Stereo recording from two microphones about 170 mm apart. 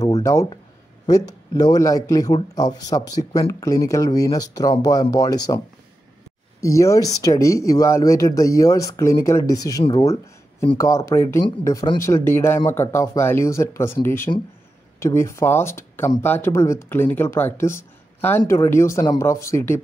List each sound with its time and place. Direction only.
0.1 s speech: 20° left (ahead or behind)
6.6 s speech: 20° left (ahead or behind)
9.8 s speech: 30° left (ahead or behind)
10.8 s speech: 20° left (ahead or behind)